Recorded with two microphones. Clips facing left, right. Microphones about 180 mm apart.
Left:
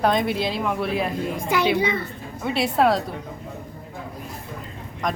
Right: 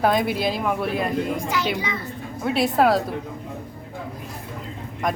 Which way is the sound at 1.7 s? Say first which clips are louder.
Left 6 dB; 60° left (ahead or behind).